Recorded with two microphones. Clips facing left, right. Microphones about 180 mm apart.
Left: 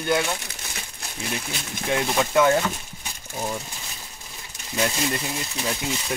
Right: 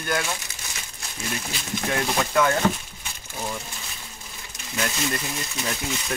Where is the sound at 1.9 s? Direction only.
20° left (ahead or behind).